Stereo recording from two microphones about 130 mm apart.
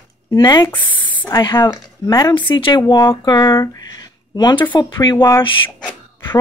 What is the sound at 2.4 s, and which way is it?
Speech, 40° left (ahead or behind).